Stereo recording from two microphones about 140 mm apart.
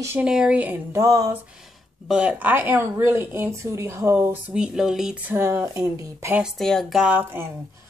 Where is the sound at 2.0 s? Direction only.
5° right (ahead or behind).